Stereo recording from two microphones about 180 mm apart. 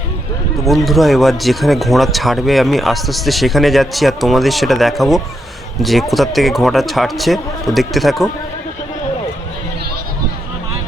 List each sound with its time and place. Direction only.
0.6 s speech: centre (ahead or behind)